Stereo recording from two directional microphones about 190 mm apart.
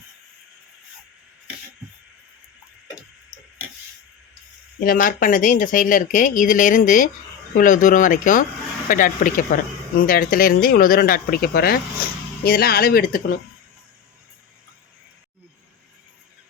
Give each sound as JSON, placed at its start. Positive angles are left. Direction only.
{"t": 4.8, "sound": "speech", "side_deg": 45}